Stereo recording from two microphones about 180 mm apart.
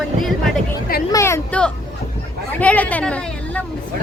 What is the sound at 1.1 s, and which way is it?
Speech, 15° left (ahead or behind).